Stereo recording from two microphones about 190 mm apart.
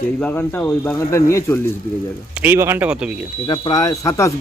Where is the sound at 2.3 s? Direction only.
10° right (ahead or behind).